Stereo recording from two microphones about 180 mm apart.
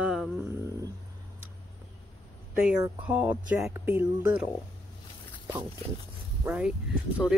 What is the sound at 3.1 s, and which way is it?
Speech, 10° right (ahead or behind).